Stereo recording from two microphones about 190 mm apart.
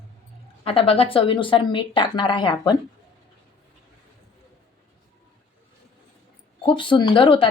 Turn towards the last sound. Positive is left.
turn(degrees=25)  # may be behind; listen again after turning